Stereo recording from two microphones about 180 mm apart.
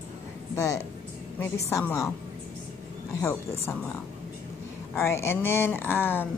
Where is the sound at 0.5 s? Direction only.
15° left (ahead or behind).